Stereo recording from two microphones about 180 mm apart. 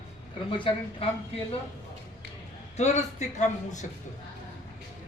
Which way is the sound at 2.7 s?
40° left (ahead or behind).